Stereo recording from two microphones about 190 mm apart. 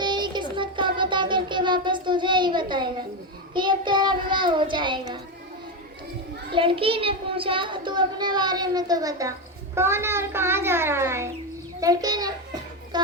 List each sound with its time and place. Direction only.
0.0 s child singing: 25° right (ahead or behind)
3.5 s a child's voice: 25° right (ahead or behind)
6.5 s a child's voice: 25° right (ahead or behind)